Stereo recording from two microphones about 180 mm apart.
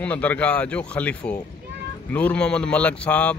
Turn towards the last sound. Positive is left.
turn(degrees=5)  # may be behind; listen again after turning